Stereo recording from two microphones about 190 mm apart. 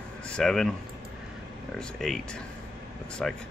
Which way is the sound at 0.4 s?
Centre (ahead or behind).